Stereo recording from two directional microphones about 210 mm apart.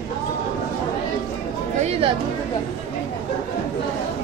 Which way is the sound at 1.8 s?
30° right (ahead or behind).